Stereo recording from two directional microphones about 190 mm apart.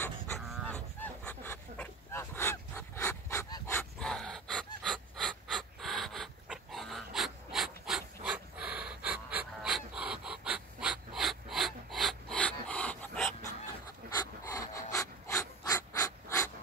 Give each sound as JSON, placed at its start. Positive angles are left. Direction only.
{"t": 0.5, "sound": "goose", "side_deg": 5}
{"t": 4.0, "sound": "gasp", "side_deg": 5}
{"t": 14.1, "sound": "breathing", "side_deg": 15}